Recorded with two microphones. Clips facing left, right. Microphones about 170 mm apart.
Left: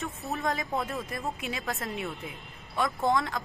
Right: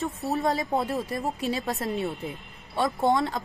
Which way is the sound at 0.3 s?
35° right (ahead or behind).